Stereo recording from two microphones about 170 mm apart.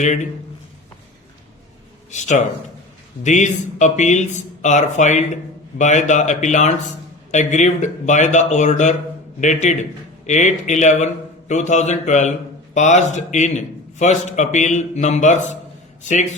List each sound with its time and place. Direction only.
0.0 s a man's voice: 45° left (ahead or behind)
2.0 s a man's voice: 45° left (ahead or behind)